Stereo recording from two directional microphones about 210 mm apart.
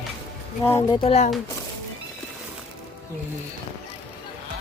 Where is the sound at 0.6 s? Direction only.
10° left (ahead or behind).